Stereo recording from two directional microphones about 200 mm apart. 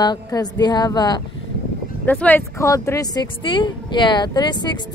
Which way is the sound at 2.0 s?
10° left (ahead or behind).